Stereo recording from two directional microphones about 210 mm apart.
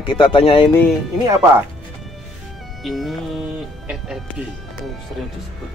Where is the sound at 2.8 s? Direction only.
Centre (ahead or behind).